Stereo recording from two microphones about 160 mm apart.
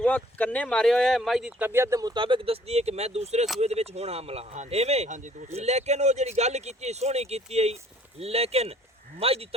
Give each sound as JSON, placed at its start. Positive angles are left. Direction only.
{"t": 0.0, "sound": "speech", "side_deg": 10}